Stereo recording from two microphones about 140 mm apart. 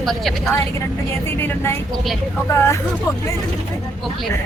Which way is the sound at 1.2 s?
15° left (ahead or behind).